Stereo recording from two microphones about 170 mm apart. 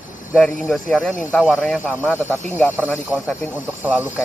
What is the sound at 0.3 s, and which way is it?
Speech, centre (ahead or behind).